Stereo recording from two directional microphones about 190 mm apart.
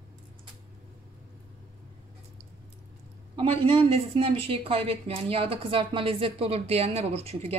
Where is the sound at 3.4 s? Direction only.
30° right (ahead or behind).